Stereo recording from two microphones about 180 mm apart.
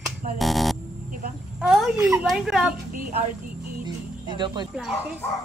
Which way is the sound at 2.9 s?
55° right (ahead or behind).